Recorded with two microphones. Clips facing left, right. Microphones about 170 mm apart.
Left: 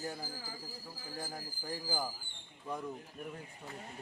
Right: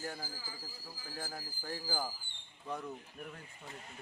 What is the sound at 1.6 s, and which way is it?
Speech, 15° left (ahead or behind).